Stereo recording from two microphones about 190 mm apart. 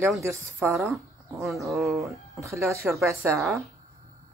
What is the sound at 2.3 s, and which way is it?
Speech, 15° right (ahead or behind).